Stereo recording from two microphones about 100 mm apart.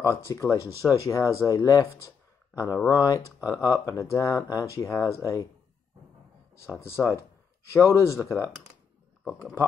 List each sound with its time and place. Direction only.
0.2 s speech: 30° left (ahead or behind)
6.6 s speech: 30° left (ahead or behind)